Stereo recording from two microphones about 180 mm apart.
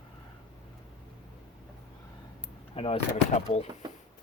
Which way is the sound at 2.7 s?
30° left (ahead or behind).